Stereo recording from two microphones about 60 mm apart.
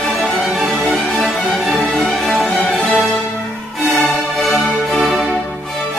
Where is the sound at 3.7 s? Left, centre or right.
Centre.